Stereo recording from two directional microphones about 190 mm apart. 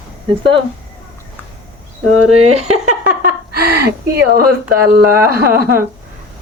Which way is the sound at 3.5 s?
55° right (ahead or behind).